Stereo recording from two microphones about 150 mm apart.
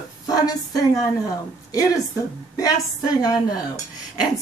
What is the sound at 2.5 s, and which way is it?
Speech, 25° left (ahead or behind).